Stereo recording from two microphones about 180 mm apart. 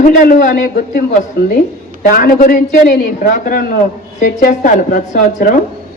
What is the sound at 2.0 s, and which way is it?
Speech, 50° left (ahead or behind).